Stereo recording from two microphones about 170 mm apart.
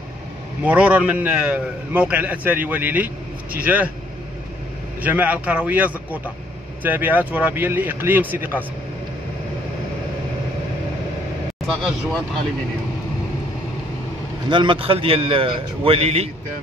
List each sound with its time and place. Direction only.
0.7 s a man's voice: 10° right (ahead or behind)
5.0 s a man's voice: 10° right (ahead or behind)
11.6 s speech: centre (ahead or behind)
14.5 s a man's voice: 30° right (ahead or behind)